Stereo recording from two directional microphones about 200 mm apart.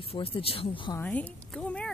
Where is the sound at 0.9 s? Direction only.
5° left (ahead or behind).